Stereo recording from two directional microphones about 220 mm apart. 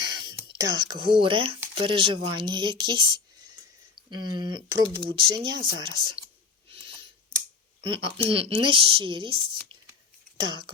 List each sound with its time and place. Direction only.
0.0 s speech: 20° right (ahead or behind)
4.1 s speech: 20° right (ahead or behind)
7.8 s speech: 25° right (ahead or behind)
10.4 s speech: 20° right (ahead or behind)